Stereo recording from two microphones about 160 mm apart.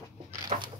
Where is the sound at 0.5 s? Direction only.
50° right (ahead or behind).